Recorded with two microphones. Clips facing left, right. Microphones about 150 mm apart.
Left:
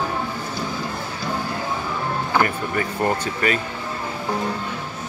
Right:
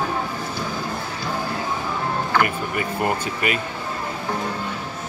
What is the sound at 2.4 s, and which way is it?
Speech, 15° right (ahead or behind).